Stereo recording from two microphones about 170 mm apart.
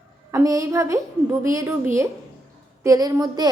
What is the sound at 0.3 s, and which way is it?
A woman's voice, 15° right (ahead or behind).